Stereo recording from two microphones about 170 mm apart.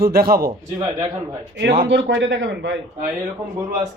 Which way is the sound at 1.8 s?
90° right.